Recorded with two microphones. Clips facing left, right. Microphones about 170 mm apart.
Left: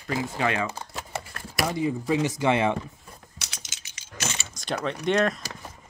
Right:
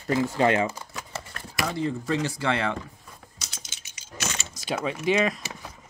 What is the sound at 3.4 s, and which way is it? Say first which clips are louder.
Typing: even; 70° left (ahead or behind).